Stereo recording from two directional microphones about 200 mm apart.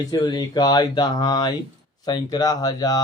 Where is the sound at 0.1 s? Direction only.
20° left (ahead or behind).